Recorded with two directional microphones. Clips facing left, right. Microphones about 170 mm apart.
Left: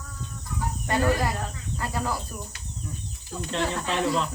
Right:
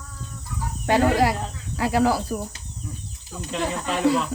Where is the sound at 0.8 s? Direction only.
90° right.